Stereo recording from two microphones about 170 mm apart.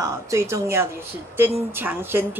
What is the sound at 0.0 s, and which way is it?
A woman's voice, 15° right (ahead or behind).